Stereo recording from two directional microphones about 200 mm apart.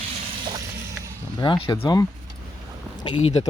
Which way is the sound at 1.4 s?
25° left (ahead or behind).